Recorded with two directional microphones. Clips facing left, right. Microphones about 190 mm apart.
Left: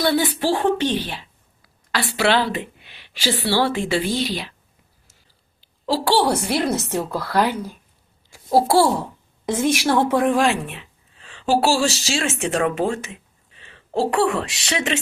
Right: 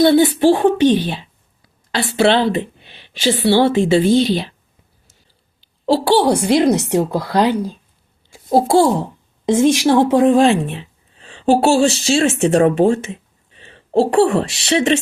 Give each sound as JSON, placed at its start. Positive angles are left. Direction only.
{"t": 0.0, "sound": "a woman's voice", "side_deg": -25}
{"t": 6.1, "sound": "a woman's voice", "side_deg": -15}